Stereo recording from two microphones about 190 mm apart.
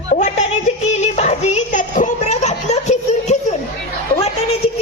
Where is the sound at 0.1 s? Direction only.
40° left (ahead or behind).